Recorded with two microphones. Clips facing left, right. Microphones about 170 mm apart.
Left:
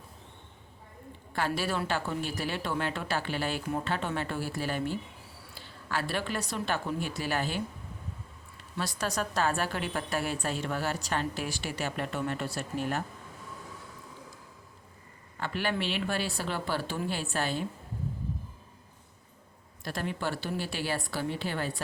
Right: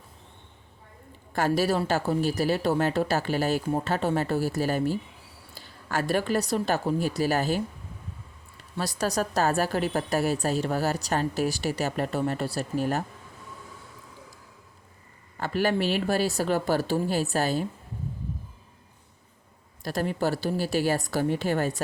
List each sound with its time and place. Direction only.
1.3 s a woman's voice: 45° right (ahead or behind)
8.8 s a woman's voice: 35° right (ahead or behind)
15.4 s a woman's voice: 40° right (ahead or behind)
19.8 s a woman's voice: 40° right (ahead or behind)